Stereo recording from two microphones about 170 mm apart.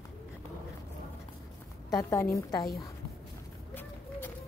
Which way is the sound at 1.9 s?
20° left (ahead or behind).